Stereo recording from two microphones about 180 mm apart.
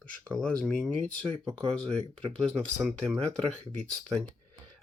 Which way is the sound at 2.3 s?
5° left (ahead or behind).